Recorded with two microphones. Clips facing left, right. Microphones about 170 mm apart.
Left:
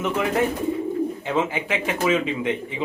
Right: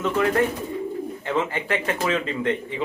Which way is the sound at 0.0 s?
10° left (ahead or behind).